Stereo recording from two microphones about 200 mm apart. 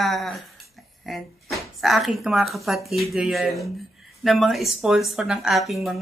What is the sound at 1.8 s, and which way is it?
A woman's voice, centre (ahead or behind).